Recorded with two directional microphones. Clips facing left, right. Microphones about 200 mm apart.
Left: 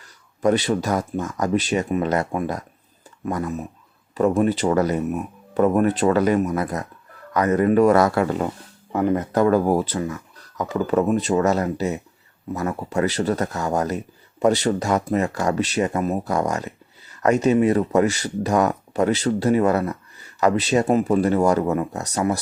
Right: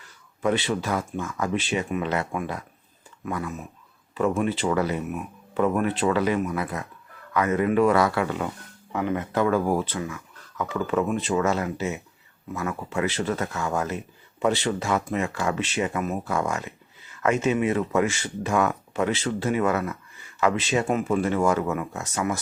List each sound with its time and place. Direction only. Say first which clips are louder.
0.0 s speech: left 5 dB; 40° left (ahead or behind)